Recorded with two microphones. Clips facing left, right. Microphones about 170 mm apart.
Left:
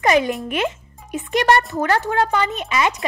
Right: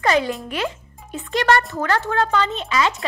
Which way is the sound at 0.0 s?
15° left (ahead or behind).